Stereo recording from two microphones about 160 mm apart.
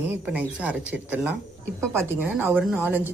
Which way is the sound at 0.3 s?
10° right (ahead or behind).